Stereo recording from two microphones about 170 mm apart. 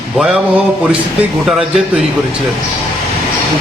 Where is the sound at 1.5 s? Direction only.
Centre (ahead or behind).